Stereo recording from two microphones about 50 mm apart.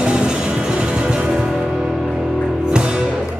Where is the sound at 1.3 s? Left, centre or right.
Centre.